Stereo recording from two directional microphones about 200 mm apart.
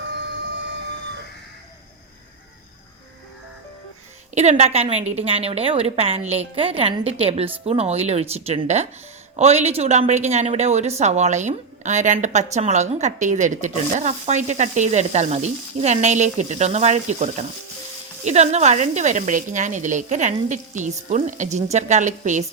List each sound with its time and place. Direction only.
4.4 s speech: 35° right (ahead or behind)